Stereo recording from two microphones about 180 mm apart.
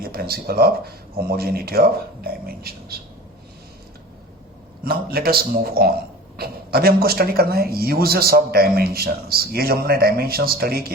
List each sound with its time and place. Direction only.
0.0 s speech: 60° right (ahead or behind)
4.8 s speech: 55° right (ahead or behind)